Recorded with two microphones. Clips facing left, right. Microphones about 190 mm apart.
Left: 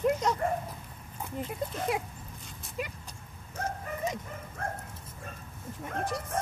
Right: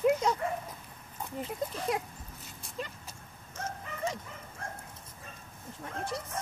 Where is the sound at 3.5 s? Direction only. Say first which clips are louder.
Left 4 dB; 55° left (ahead or behind).